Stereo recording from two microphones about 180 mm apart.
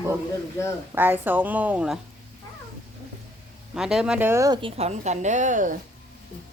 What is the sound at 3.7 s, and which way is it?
Speech, 5° right (ahead or behind).